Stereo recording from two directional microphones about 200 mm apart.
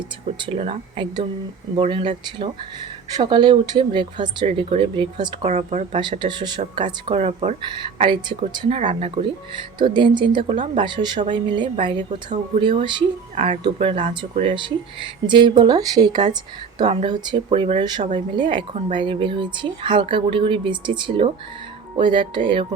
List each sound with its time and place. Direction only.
0.3 s speech: 25° right (ahead or behind)
8.8 s speech: 35° right (ahead or behind)
13.3 s speech: 35° right (ahead or behind)
13.7 s speech: 25° right (ahead or behind)